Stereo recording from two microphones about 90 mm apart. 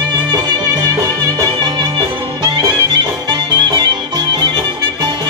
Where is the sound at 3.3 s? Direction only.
60° right (ahead or behind).